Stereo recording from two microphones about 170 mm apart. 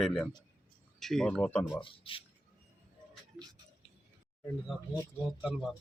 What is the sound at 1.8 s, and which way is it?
Speech, 30° left (ahead or behind).